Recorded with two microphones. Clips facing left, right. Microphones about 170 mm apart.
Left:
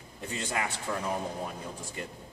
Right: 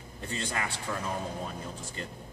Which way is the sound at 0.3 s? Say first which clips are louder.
Left 1 dB; 15° left (ahead or behind).